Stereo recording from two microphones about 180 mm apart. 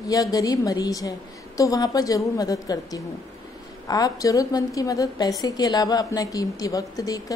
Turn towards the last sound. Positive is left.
turn(degrees=20)  # may be behind; listen again after turning